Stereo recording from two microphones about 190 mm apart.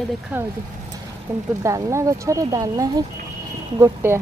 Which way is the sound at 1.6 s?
15° right (ahead or behind).